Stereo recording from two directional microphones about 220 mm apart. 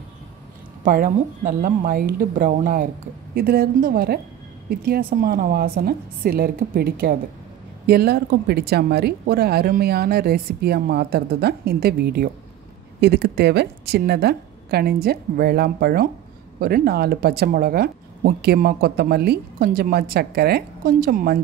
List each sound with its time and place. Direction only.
0.8 s speech: 35° right (ahead or behind)